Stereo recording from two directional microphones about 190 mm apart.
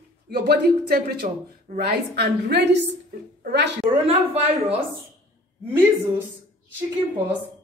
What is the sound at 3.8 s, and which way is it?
Speech, 30° right (ahead or behind).